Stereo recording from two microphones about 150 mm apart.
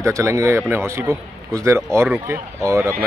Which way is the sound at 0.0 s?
20° right (ahead or behind).